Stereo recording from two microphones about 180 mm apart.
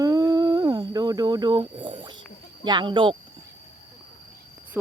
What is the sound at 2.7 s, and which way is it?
Speech, 25° right (ahead or behind).